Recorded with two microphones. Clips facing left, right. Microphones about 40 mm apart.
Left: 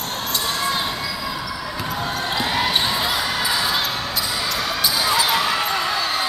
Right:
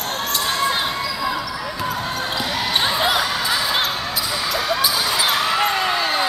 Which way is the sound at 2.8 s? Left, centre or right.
Right.